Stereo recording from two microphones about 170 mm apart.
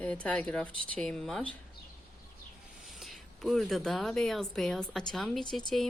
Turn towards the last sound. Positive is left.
turn(degrees=0)  # may be behind; listen again after turning